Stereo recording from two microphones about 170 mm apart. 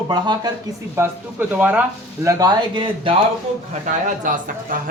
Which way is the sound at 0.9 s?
10° right (ahead or behind).